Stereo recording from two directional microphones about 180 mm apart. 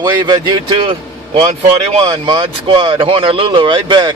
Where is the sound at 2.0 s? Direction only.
25° right (ahead or behind).